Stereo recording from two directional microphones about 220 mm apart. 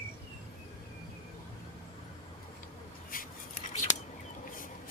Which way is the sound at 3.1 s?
40° left (ahead or behind).